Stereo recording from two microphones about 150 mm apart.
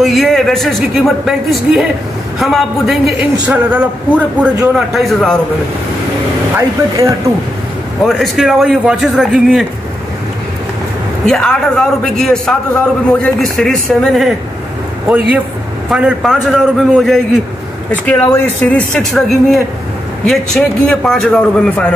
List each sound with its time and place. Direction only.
0.0 s a woman's voice: centre (ahead or behind)
6.5 s speech: 20° right (ahead or behind)
8.1 s a woman's voice: centre (ahead or behind)
11.2 s a woman's voice: 5° left (ahead or behind)
15.9 s a woman's voice: 5° right (ahead or behind)
18.0 s a woman's voice: 10° left (ahead or behind)